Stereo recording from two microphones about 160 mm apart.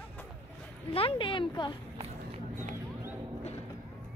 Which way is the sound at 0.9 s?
35° left (ahead or behind).